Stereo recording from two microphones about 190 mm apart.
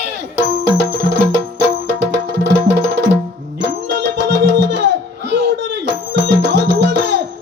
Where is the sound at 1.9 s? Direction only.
70° right (ahead or behind).